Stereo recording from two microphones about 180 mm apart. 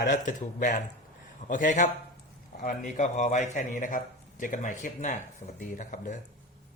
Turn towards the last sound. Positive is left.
turn(degrees=45)  # may be behind; listen again after turning